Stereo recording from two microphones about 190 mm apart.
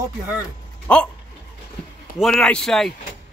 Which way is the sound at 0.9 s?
5° left (ahead or behind).